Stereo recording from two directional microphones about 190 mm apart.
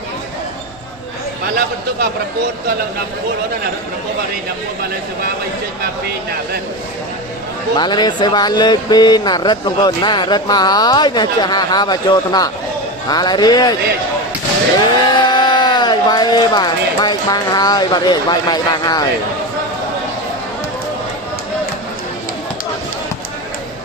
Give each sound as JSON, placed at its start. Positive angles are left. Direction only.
{"t": 7.7, "sound": "speech", "side_deg": 25}
{"t": 14.8, "sound": "speech", "side_deg": 25}